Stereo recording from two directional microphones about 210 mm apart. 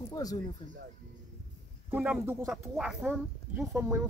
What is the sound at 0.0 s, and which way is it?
Speech, 15° left (ahead or behind).